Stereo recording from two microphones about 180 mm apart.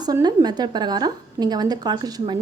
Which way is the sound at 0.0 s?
20° right (ahead or behind).